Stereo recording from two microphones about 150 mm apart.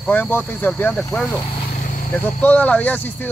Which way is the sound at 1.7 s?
60° left (ahead or behind).